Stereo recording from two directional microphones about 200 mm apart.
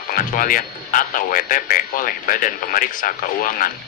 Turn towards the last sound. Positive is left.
turn(degrees=45)  # may be behind; listen again after turning